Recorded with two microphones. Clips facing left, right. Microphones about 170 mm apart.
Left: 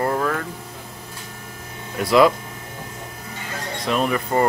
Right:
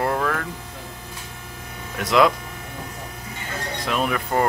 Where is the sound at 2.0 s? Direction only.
Centre (ahead or behind).